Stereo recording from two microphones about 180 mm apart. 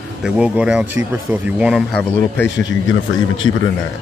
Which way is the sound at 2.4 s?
90° left.